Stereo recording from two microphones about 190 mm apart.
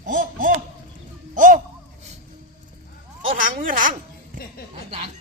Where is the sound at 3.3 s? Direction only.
45° right (ahead or behind).